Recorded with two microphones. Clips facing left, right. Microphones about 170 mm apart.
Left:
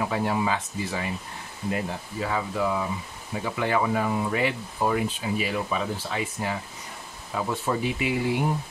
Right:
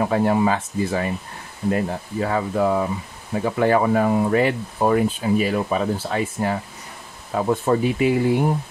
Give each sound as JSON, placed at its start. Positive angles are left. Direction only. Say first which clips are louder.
{"t": 0.0, "sound": "speech", "louder": "right 7 dB", "side_deg": -45}